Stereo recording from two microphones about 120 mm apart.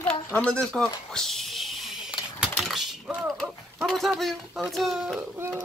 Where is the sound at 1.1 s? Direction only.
5° left (ahead or behind).